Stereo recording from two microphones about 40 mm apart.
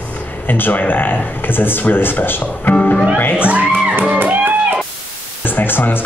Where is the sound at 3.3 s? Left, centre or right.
Right.